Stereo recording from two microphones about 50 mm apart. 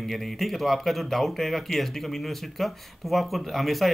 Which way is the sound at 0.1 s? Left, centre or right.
Centre.